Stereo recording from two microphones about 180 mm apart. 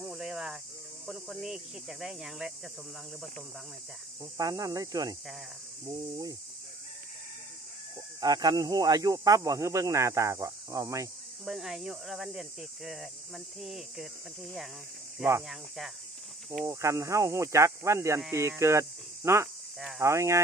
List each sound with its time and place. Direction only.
0.0 s cricket: centre (ahead or behind)
1.0 s speech: centre (ahead or behind)
4.4 s speech: 20° right (ahead or behind)
8.2 s speech: 20° right (ahead or behind)
11.4 s speech: centre (ahead or behind)
15.1 s speech: 5° right (ahead or behind)
16.6 s speech: 15° right (ahead or behind)